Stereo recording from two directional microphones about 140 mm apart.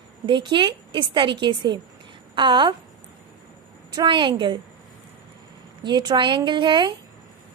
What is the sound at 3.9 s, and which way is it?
Speech, 35° right (ahead or behind).